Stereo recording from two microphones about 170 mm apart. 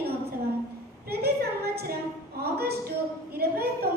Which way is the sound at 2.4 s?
70° right (ahead or behind).